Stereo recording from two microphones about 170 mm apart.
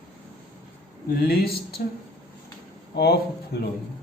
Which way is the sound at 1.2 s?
65° left (ahead or behind).